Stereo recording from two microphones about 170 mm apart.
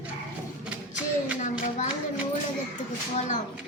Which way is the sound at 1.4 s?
45° left (ahead or behind).